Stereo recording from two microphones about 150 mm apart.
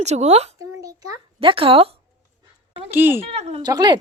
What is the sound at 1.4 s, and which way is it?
Speech, 40° right (ahead or behind).